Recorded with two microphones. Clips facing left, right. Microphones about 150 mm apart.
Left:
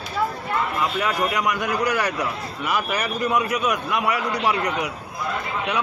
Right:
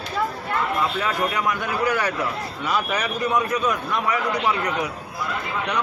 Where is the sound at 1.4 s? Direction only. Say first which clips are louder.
Even; 15° left (ahead or behind).